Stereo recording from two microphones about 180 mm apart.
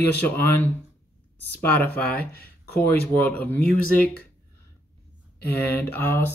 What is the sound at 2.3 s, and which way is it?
Speech, 60° left (ahead or behind).